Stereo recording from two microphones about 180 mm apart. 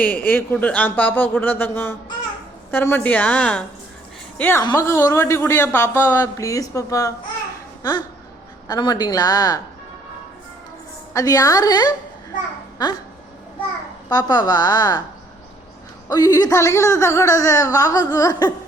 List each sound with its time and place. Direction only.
0.0 s a man's voice: 10° left (ahead or behind)
7.8 s a sound: 20° left (ahead or behind)
8.6 s speech: 20° left (ahead or behind)
11.1 s speech: 20° left (ahead or behind)
14.1 s speech: 20° left (ahead or behind)
16.0 s speech: 20° left (ahead or behind)